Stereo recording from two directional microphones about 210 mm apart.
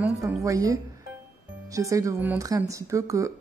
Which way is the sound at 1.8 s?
15° right (ahead or behind).